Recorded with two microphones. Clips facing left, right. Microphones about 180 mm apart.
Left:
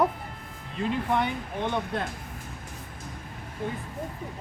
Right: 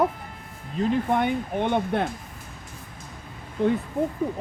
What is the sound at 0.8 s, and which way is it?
Speech, 50° right (ahead or behind).